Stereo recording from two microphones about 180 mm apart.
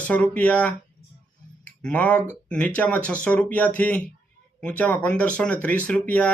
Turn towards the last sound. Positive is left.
turn(degrees=5)  # may be behind; listen again after turning